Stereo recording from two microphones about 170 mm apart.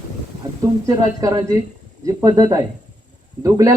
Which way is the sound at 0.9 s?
20° right (ahead or behind).